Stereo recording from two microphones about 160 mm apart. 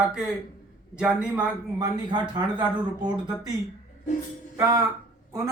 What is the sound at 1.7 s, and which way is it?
Speech, 25° right (ahead or behind).